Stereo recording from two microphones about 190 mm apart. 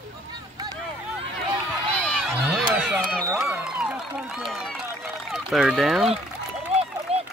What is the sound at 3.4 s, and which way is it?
Run, 5° right (ahead or behind).